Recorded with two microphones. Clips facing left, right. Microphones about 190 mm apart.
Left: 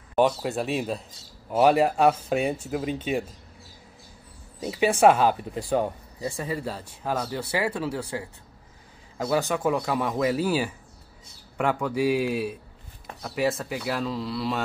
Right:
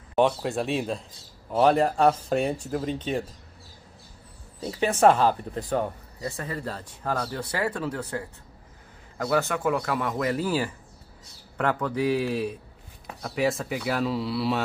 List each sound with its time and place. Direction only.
0.1 s speech: 5° left (ahead or behind)
4.6 s speech: 15° left (ahead or behind)
9.2 s speech: 15° left (ahead or behind); by 14.6 s 5° right (ahead or behind)